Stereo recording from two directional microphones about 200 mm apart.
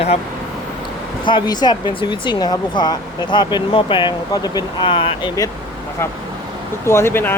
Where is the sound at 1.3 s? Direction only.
20° left (ahead or behind).